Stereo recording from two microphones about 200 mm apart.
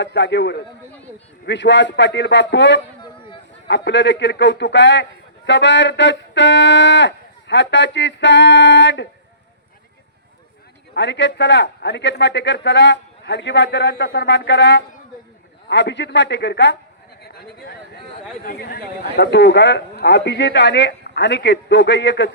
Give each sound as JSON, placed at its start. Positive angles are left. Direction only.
{"t": 0.0, "sound": "a man's voice", "side_deg": 60}
{"t": 10.9, "sound": "a man's voice", "side_deg": 60}
{"t": 18.4, "sound": "a man's voice", "side_deg": 50}